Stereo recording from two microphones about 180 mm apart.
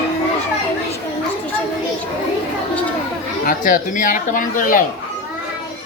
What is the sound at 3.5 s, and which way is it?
Speech, 45° left (ahead or behind).